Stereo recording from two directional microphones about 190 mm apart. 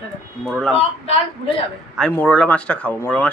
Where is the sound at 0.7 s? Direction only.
35° left (ahead or behind).